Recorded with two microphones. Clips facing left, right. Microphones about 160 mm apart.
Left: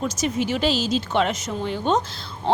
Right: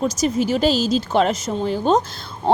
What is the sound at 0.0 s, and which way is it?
A woman's voice, 40° right (ahead or behind).